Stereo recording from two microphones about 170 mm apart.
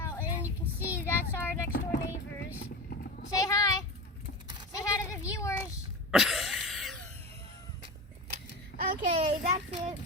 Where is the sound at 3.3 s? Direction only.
20° left (ahead or behind).